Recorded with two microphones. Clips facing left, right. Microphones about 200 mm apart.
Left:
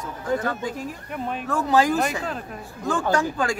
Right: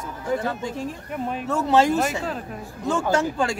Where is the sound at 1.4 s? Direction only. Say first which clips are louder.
Right 1 dB; 25° right (ahead or behind).